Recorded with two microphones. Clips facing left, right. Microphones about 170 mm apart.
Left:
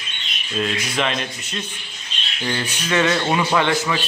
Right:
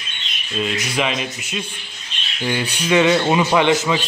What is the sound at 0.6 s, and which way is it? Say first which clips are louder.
Speech: right 1 dB; 5° right (ahead or behind).